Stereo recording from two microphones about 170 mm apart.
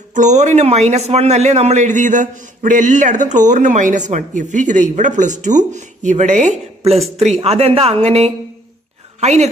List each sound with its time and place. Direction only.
0.1 s a man's voice: 45° right (ahead or behind)